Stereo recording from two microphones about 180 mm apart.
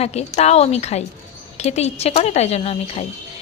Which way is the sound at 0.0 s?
35° left (ahead or behind).